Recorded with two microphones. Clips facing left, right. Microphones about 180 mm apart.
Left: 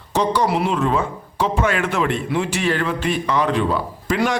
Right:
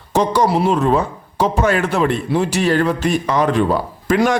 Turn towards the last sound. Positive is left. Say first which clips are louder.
# right 5 dB
turn(degrees=-45)  # may be behind; listen again after turning